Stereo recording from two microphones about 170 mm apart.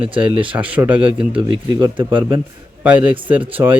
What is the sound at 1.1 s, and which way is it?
Speech, 30° right (ahead or behind).